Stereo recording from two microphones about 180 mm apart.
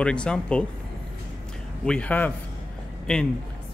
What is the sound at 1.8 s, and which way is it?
Speech, 5° left (ahead or behind).